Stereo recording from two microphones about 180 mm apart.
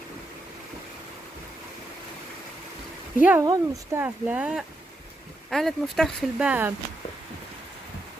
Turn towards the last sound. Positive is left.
turn(degrees=-5)  # may be behind; listen again after turning